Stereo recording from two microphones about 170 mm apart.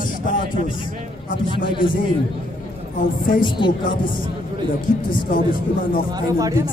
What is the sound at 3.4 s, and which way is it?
Speech, 30° left (ahead or behind).